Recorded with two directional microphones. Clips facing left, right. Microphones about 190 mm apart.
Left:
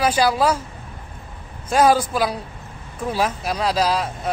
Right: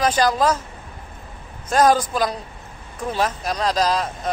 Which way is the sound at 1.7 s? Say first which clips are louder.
Even; 10° left (ahead or behind).